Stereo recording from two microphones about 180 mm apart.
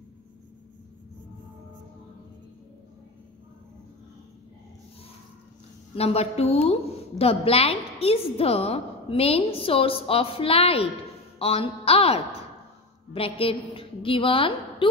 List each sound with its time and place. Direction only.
5.9 s a woman's voice: 35° left (ahead or behind)